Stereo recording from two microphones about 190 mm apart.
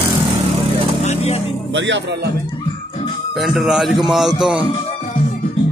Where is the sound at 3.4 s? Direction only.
Centre (ahead or behind).